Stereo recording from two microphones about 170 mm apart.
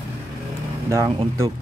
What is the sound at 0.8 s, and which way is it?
Speech, 20° right (ahead or behind).